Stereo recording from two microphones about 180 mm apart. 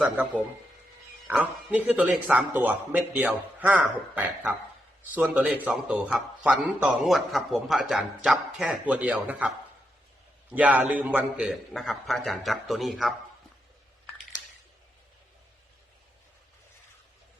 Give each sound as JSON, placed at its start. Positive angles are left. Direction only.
{"t": 0.0, "sound": "a man's voice", "side_deg": -10}
{"t": 10.5, "sound": "a man's voice", "side_deg": -10}